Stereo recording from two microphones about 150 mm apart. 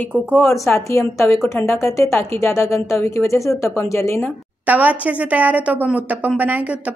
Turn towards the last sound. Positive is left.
turn(degrees=-10)  # may be behind; listen again after turning